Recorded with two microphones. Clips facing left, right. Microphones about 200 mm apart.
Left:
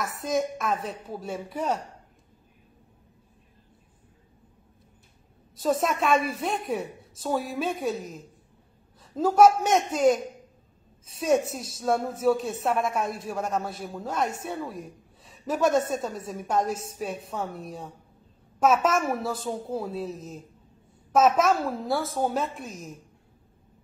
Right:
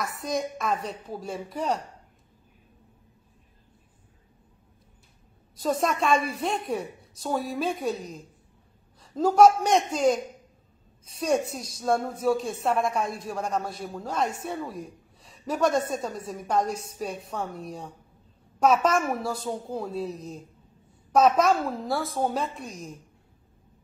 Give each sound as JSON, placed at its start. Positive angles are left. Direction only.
{"t": 0.0, "sound": "a woman's voice", "side_deg": 0}
{"t": 5.6, "sound": "a woman's voice", "side_deg": 0}
{"t": 11.1, "sound": "a woman's voice", "side_deg": 5}